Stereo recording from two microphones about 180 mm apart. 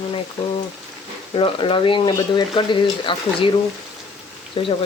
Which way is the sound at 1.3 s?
30° left (ahead or behind).